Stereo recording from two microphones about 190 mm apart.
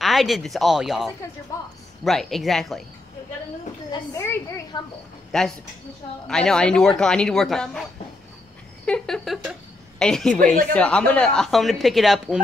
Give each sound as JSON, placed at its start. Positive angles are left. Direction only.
{"t": 0.0, "sound": "speech", "side_deg": 0}
{"t": 3.9, "sound": "a woman's voice", "side_deg": 15}
{"t": 5.3, "sound": "speech", "side_deg": 5}
{"t": 8.8, "sound": "speech", "side_deg": 5}
{"t": 10.4, "sound": "speech", "side_deg": -45}
{"t": 10.7, "sound": "speech", "side_deg": 5}